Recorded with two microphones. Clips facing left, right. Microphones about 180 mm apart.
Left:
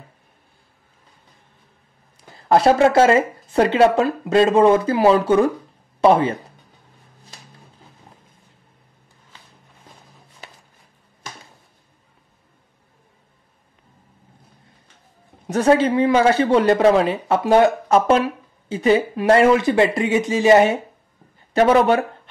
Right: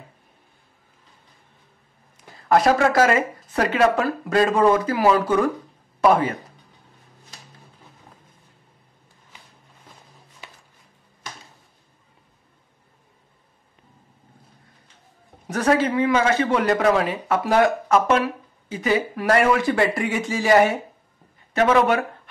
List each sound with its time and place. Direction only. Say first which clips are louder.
2.1 s speech: left 2 dB; 30° left (ahead or behind)
15.4 s speech: left 4 dB; 25° left (ahead or behind)